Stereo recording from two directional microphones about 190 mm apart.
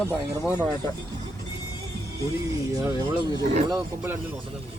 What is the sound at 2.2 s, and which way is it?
Speech, 15° right (ahead or behind).